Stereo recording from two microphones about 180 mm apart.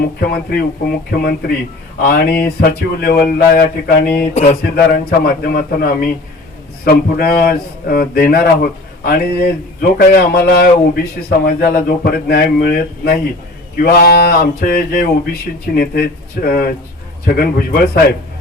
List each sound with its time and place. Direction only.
0.0 s a man's voice: 60° left (ahead or behind)